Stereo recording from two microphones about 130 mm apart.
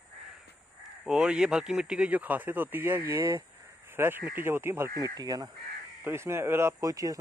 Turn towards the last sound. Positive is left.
turn(degrees=-25)  # may be behind; listen again after turning